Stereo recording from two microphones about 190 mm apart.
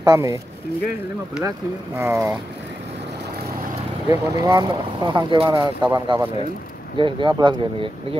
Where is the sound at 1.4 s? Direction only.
15° right (ahead or behind).